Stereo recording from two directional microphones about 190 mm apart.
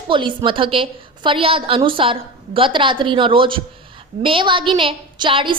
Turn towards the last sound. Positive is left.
turn(degrees=-25)  # may be behind; listen again after turning